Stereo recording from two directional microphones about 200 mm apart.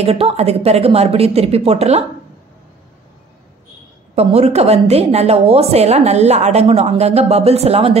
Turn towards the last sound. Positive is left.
turn(degrees=-30)  # may be behind; listen again after turning